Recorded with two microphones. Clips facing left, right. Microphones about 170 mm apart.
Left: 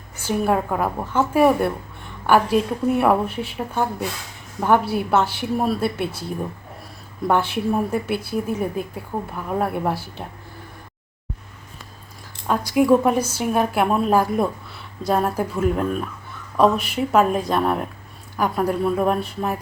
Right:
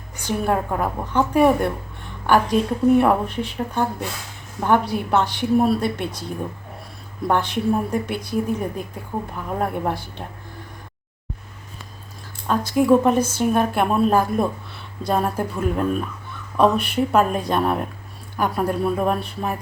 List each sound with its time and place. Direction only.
0.3 s speech: 5° left (ahead or behind)
7.3 s speech: 5° left (ahead or behind)
12.5 s speech: 10° left (ahead or behind)